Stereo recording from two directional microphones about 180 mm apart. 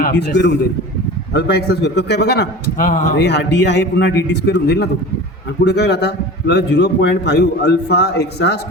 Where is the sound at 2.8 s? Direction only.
45° left (ahead or behind).